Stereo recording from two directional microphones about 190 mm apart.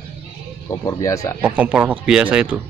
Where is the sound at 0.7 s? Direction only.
15° left (ahead or behind).